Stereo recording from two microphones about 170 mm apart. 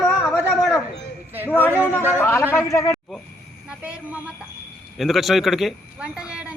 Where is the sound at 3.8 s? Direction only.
5° right (ahead or behind).